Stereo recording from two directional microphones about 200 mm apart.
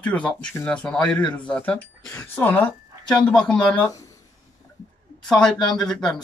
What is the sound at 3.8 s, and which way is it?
Speech, 15° left (ahead or behind).